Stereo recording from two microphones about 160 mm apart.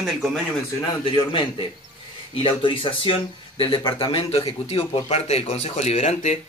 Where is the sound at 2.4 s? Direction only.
35° left (ahead or behind).